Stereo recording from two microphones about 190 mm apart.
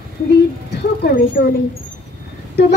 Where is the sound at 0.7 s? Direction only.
55° left (ahead or behind).